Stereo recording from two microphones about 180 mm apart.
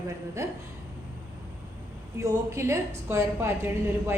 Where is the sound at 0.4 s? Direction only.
15° right (ahead or behind).